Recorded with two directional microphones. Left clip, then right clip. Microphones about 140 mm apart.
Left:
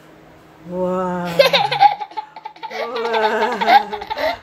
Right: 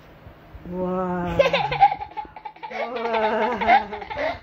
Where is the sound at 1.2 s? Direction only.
30° left (ahead or behind).